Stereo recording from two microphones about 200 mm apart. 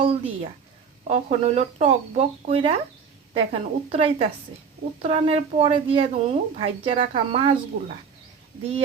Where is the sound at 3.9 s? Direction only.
30° right (ahead or behind).